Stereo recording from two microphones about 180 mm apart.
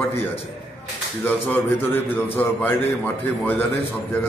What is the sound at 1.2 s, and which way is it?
Speech, 10° left (ahead or behind).